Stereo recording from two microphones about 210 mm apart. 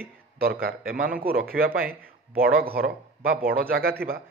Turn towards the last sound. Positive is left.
turn(degrees=-45)  # may be behind; listen again after turning